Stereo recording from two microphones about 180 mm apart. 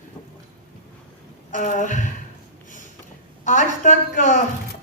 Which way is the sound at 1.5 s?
45° left (ahead or behind).